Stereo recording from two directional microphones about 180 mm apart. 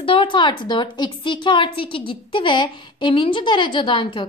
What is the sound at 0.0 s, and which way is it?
A woman's voice, 30° left (ahead or behind).